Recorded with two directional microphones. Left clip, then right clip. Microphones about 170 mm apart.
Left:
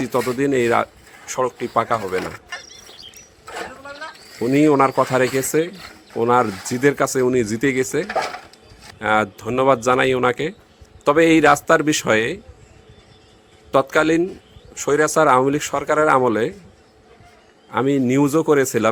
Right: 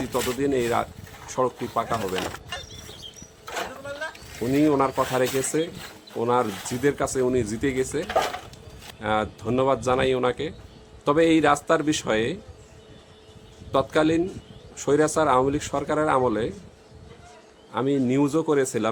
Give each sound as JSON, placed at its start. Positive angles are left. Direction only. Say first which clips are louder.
{"t": 0.3, "sound": "speech", "louder": "left 6 dB", "side_deg": 30}
{"t": 4.4, "sound": "speech", "louder": "left 6 dB", "side_deg": 35}
{"t": 8.0, "sound": "speech", "louder": "left 1 dB", "side_deg": 10}
{"t": 9.0, "sound": "speech", "louder": "left 7 dB", "side_deg": 30}
{"t": 13.7, "sound": "speech", "louder": "left 5 dB", "side_deg": 30}
{"t": 17.7, "sound": "speech", "louder": "left 5 dB", "side_deg": 25}